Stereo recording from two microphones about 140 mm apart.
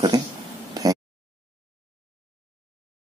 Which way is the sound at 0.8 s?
25° right (ahead or behind).